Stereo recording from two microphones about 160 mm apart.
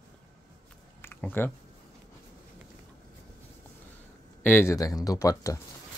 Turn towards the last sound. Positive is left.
turn(degrees=20)  # may be behind; listen again after turning